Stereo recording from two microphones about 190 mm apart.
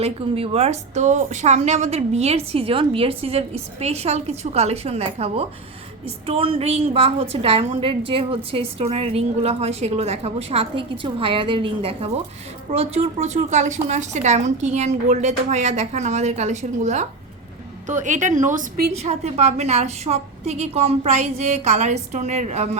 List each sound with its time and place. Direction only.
0.0 s a woman's voice: 30° right (ahead or behind)